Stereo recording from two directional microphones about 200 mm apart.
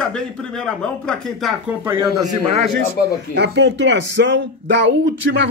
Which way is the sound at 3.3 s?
60° right (ahead or behind).